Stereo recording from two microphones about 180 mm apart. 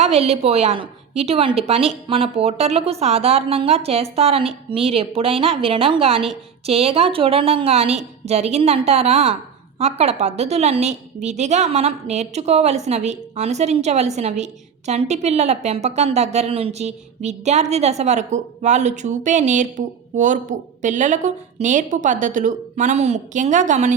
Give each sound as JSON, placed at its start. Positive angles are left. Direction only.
{"t": 0.0, "sound": "a woman's voice", "side_deg": -35}